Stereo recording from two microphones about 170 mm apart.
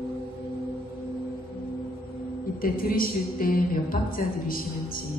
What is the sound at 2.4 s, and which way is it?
A woman's voice, 55° left (ahead or behind).